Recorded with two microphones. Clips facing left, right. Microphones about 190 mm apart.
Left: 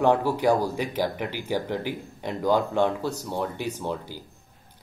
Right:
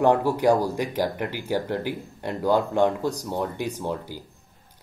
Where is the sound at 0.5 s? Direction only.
10° right (ahead or behind).